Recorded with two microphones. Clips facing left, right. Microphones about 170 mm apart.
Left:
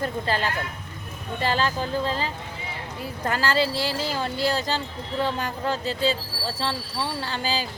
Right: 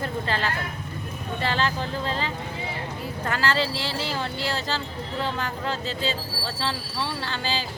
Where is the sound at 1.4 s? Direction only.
40° left (ahead or behind).